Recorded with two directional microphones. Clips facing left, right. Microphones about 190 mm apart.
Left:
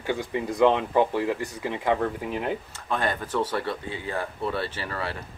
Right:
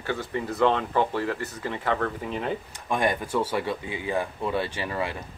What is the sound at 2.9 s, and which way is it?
Speech, 15° right (ahead or behind).